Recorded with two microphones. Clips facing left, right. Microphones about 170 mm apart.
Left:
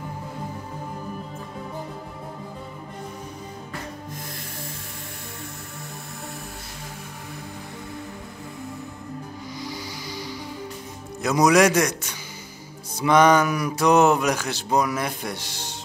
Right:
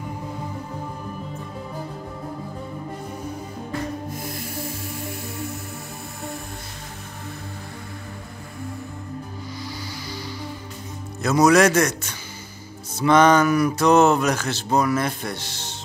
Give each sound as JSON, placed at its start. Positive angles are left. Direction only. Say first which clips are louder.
{"t": 4.3, "sound": "music", "louder": "right 6 dB", "side_deg": -10}
{"t": 9.6, "sound": "music", "louder": "left 2 dB", "side_deg": 15}
{"t": 11.2, "sound": "speech", "louder": "right 1 dB", "side_deg": 15}